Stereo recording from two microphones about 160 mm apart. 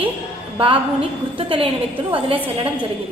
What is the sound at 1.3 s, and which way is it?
A woman's voice, 35° right (ahead or behind).